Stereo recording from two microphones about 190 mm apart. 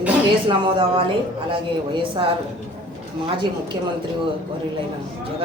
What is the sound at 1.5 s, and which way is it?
Speech, 25° right (ahead or behind).